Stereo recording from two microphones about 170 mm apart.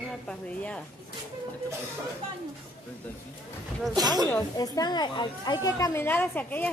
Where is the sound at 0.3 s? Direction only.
5° left (ahead or behind).